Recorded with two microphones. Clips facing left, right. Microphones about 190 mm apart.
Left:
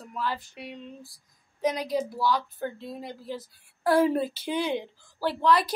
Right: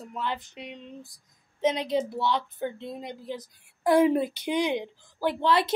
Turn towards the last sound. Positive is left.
turn(degrees=-25)  # may be behind; listen again after turning